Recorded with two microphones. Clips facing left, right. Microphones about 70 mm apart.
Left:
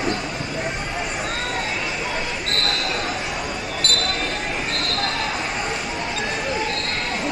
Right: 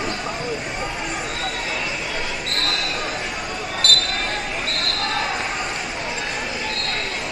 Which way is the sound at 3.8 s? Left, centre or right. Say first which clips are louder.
Right 4 dB; left.